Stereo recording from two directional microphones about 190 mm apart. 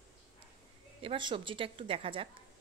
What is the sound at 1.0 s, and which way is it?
A woman's voice, 25° right (ahead or behind).